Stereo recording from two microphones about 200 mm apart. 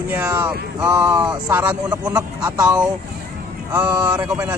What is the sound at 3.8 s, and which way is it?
Speech, 20° right (ahead or behind).